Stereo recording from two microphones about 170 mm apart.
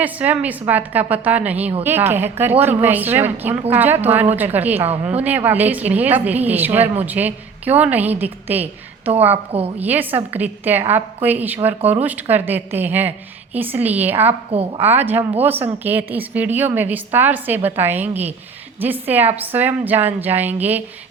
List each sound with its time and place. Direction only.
0.0 s a woman's voice: 10° right (ahead or behind)
9.8 s a woman's voice: 10° right (ahead or behind)